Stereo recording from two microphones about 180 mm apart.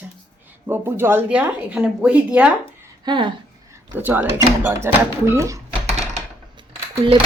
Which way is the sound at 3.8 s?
10° right (ahead or behind).